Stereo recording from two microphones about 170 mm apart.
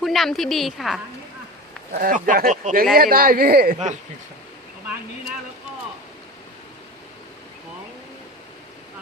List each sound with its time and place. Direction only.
0.0 s a woman's voice: centre (ahead or behind)
1.9 s speech: 55° right (ahead or behind)